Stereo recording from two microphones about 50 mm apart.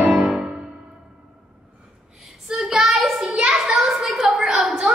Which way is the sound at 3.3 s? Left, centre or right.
Right.